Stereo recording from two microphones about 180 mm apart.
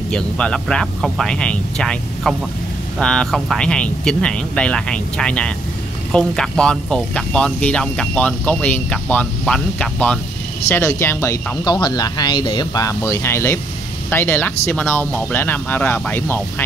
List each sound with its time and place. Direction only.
0.1 s speech: 5° left (ahead or behind)